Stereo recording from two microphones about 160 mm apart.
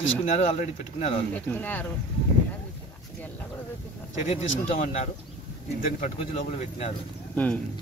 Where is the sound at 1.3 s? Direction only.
10° left (ahead or behind).